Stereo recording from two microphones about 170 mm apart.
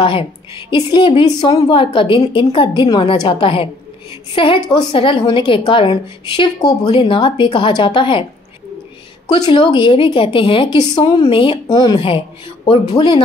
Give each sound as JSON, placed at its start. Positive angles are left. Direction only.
{"t": 0.0, "sound": "a woman's voice", "side_deg": 30}
{"t": 9.3, "sound": "a woman's voice", "side_deg": 30}